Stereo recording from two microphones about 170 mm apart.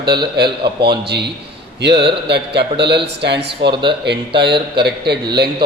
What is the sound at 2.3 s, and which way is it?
Speech, 80° right.